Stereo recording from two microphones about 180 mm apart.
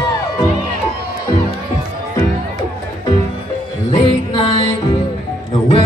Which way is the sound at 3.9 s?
30° left (ahead or behind).